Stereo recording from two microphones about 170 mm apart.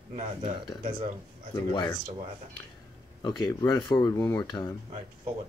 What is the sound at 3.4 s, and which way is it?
Speech, 25° left (ahead or behind).